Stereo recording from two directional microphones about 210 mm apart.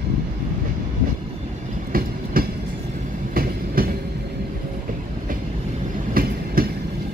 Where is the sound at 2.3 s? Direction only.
45° right (ahead or behind).